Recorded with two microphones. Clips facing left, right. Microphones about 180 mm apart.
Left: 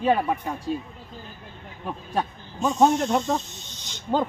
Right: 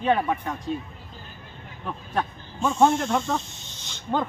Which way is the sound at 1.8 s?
15° left (ahead or behind).